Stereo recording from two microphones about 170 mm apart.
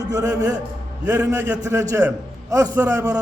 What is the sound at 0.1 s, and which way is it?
Speech, 20° right (ahead or behind).